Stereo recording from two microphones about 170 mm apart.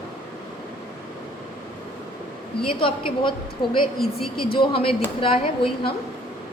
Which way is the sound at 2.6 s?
35° left (ahead or behind).